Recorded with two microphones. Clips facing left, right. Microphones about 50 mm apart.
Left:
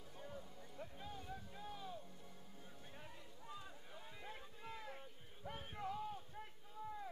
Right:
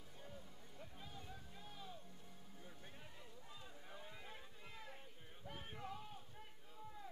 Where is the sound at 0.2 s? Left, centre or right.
Centre.